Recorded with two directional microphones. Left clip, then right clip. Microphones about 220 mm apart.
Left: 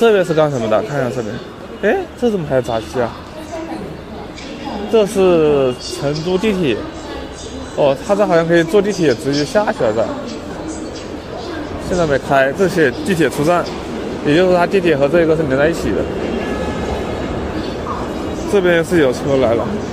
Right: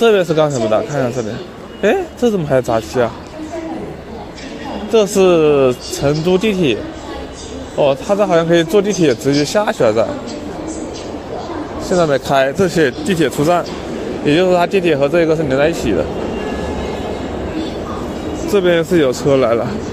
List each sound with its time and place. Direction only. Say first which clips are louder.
0.0 s a man's voice: even; 10° right (ahead or behind)
0.7 s a man's voice: right 1 dB; centre (ahead or behind)
1.8 s a man's voice: right 2 dB; 15° right (ahead or behind)
4.9 s a man's voice: right 1 dB; 15° right (ahead or behind)
7.8 s a man's voice: even; 10° right (ahead or behind)
12.0 s a man's voice: even; 15° right (ahead or behind)
18.5 s a man's voice: even; 10° right (ahead or behind)
19.3 s speech: right 1 dB; 25° right (ahead or behind)